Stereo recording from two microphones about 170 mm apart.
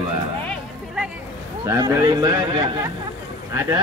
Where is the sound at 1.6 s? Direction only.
20° right (ahead or behind).